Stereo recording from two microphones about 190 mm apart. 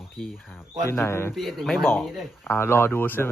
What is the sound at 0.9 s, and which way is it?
Speech, 15° left (ahead or behind).